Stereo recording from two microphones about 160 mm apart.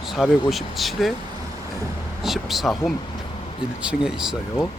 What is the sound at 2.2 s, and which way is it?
Speech, centre (ahead or behind).